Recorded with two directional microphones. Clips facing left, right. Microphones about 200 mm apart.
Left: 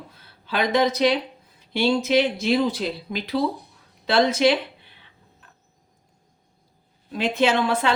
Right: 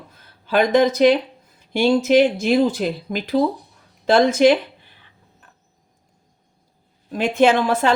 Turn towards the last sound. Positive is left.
turn(degrees=-45)  # may be behind; listen again after turning